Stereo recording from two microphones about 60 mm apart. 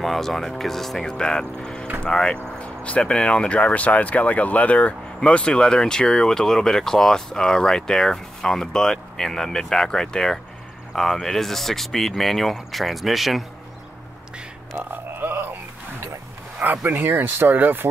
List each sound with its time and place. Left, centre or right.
0.0 s speech: centre
14.8 s a sound: right
16.8 s speech: right